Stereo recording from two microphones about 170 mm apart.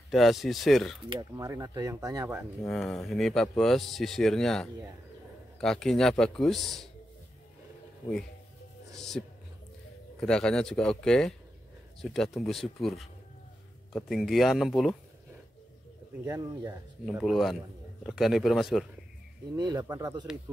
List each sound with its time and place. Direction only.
0.1 s a man's voice: centre (ahead or behind)
1.3 s speech: 20° right (ahead or behind)
2.7 s a man's voice: centre (ahead or behind)
10.2 s a man's voice: 5° left (ahead or behind)
16.3 s speech: 20° right (ahead or behind)
17.0 s a man's voice: centre (ahead or behind)
19.5 s speech: 20° right (ahead or behind)